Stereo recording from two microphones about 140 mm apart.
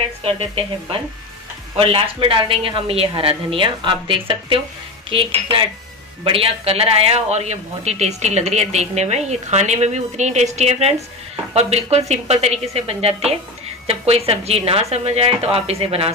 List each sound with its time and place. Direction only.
0.2 s speech: 40° right (ahead or behind)